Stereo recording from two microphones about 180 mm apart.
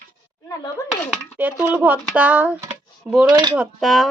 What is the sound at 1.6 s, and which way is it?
Speech, 10° right (ahead or behind).